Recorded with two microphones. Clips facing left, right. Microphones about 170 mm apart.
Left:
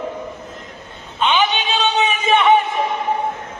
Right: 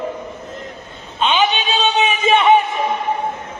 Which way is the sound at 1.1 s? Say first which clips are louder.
Right 1 dB; 20° right (ahead or behind).